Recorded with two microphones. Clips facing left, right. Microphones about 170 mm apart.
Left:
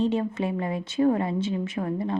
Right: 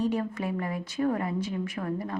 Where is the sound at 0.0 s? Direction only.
25° left (ahead or behind).